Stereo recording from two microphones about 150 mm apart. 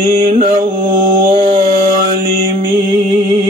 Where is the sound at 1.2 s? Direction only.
35° right (ahead or behind).